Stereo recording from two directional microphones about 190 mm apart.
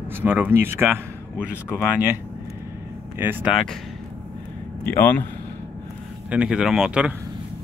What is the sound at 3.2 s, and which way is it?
Speech, 10° right (ahead or behind).